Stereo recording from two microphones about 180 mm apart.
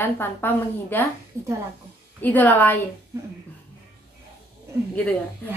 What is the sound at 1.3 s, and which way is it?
Speech, 15° right (ahead or behind).